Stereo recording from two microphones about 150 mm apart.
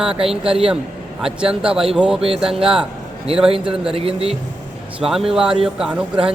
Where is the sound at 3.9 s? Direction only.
40° right (ahead or behind).